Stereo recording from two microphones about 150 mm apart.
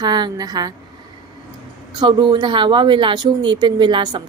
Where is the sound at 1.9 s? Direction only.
30° right (ahead or behind).